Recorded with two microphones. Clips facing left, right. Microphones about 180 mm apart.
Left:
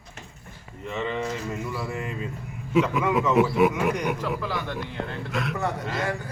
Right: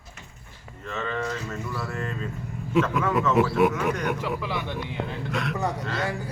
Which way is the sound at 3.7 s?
10° left (ahead or behind).